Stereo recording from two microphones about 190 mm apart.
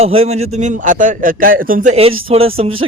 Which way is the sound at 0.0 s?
30° right (ahead or behind).